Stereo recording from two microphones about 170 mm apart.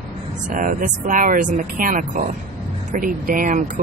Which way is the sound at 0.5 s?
50° right (ahead or behind).